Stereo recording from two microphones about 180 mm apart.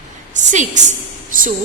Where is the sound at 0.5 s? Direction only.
40° right (ahead or behind).